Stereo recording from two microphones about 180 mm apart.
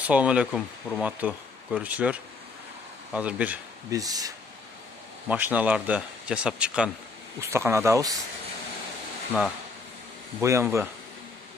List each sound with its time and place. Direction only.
0.0 s speech: 5° right (ahead or behind)
3.9 s speech: 20° right (ahead or behind)
5.3 s speech: 10° right (ahead or behind)
10.4 s speech: 15° right (ahead or behind)